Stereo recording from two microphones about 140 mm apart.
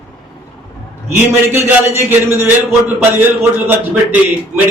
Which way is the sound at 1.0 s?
20° right (ahead or behind).